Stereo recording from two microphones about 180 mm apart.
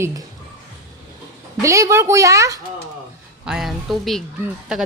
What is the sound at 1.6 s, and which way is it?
Speech, 15° right (ahead or behind).